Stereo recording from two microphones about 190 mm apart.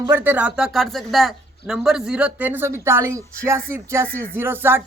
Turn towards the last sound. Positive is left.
turn(degrees=-10)  # may be behind; listen again after turning